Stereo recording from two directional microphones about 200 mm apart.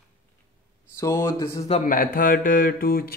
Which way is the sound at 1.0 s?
15° left (ahead or behind).